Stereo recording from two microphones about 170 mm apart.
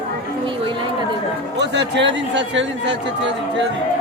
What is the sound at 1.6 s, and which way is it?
A man's voice, 90° right.